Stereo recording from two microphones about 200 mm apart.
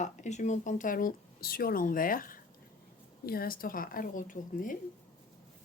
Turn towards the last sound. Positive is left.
turn(degrees=40)  # may be behind; listen again after turning